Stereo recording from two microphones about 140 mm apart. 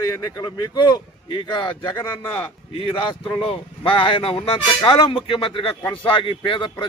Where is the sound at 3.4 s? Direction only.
40° left (ahead or behind).